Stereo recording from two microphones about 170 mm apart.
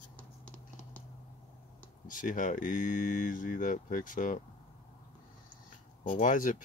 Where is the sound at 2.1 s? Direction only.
50° left (ahead or behind).